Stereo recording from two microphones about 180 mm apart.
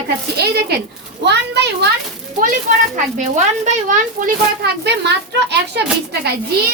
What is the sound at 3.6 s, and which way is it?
A child's voice, 40° right (ahead or behind).